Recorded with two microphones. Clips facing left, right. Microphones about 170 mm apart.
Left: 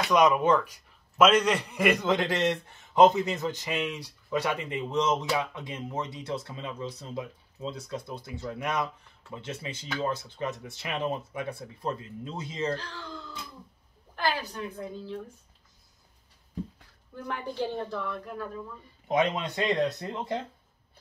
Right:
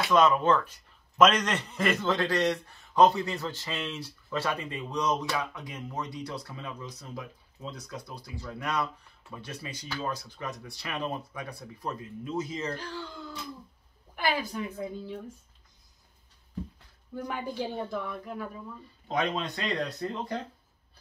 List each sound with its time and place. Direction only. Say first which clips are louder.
0.1 s a man's voice: left 1 dB; 15° left (ahead or behind)
14.1 s a woman's voice: even; 10° right (ahead or behind)
17.3 s a woman's voice: left 3 dB; 10° right (ahead or behind)
19.0 s a man's voice: left 3 dB; 20° left (ahead or behind)